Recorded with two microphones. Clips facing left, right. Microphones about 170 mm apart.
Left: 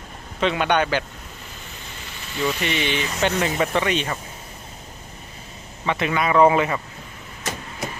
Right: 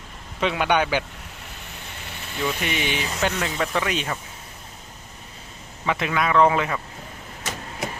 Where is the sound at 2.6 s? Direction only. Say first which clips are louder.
Left 2 dB; 10° right (ahead or behind).